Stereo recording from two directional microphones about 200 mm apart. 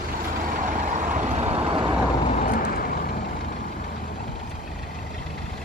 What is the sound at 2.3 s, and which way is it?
Vehicle, 40° left (ahead or behind).